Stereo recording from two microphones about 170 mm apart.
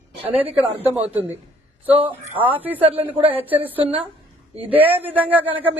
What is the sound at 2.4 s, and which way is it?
Speech, 30° right (ahead or behind).